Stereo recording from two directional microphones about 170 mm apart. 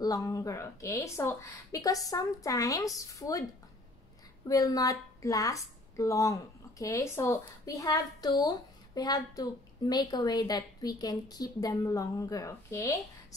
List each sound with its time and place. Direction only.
0.0 s a woman's voice: 20° left (ahead or behind)
4.5 s a woman's voice: 20° left (ahead or behind)